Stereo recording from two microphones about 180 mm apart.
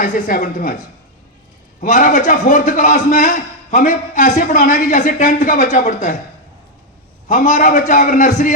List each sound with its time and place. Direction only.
0.0 s a man's voice: 50° left (ahead or behind)
1.8 s a man's voice: 50° left (ahead or behind)
7.3 s a man's voice: 45° left (ahead or behind)